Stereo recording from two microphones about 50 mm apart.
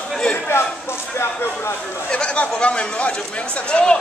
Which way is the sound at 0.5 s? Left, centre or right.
Left.